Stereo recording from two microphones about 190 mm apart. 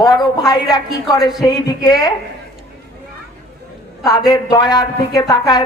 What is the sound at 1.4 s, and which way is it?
Speech, 20° left (ahead or behind).